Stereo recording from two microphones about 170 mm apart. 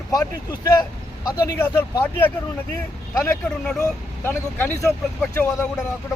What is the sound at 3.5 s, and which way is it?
A man's voice, 5° left (ahead or behind).